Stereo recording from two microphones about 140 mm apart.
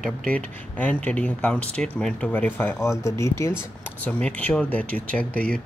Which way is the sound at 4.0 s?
10° left (ahead or behind).